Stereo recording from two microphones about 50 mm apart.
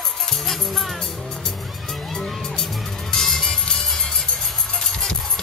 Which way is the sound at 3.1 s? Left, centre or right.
Centre.